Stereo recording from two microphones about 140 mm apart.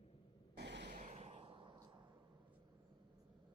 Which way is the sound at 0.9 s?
60° right (ahead or behind).